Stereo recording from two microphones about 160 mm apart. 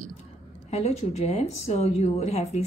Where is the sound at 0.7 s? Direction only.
40° left (ahead or behind).